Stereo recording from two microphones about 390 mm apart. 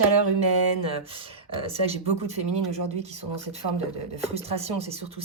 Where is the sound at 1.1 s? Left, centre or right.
Centre.